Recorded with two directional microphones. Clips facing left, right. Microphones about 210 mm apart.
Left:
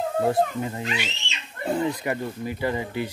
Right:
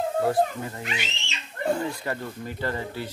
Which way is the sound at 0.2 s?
20° left (ahead or behind).